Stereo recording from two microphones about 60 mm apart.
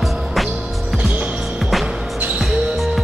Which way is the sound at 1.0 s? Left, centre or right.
Right.